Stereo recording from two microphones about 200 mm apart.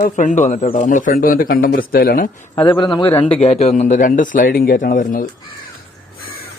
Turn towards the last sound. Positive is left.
turn(degrees=45)  # may be behind; listen again after turning